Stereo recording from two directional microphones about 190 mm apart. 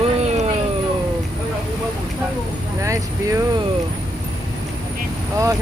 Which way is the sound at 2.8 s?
15° right (ahead or behind).